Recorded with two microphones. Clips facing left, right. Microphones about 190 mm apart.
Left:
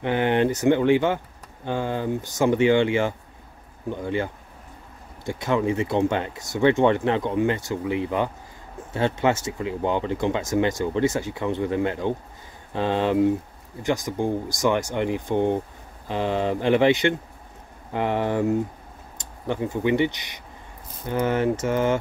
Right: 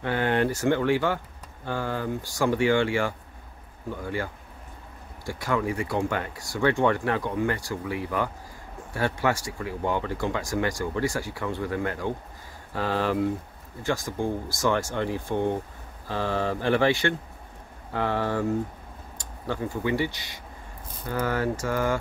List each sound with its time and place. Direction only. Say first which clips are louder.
0.0 s speech: left 3 dB; 20° left (ahead or behind)